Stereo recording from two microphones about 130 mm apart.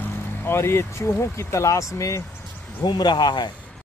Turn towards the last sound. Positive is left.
turn(degrees=35)  # may be behind; listen again after turning